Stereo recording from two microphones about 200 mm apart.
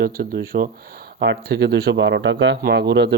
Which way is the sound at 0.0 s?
50° right (ahead or behind).